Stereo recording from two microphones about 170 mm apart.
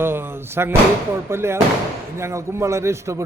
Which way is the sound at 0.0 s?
15° right (ahead or behind).